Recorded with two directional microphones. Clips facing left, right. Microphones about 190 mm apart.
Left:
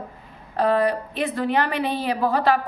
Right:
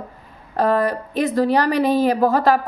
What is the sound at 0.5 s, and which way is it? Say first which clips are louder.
A woman's voice: right 2 dB; 45° right (ahead or behind).